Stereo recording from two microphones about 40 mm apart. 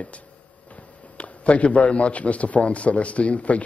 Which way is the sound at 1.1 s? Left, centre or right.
Left.